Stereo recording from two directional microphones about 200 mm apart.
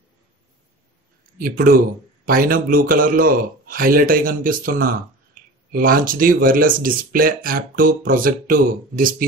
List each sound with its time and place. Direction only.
2.2 s a man's voice: 45° right (ahead or behind)